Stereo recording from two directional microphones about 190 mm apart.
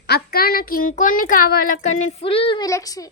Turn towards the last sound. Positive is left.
turn(degrees=20)  # may be behind; listen again after turning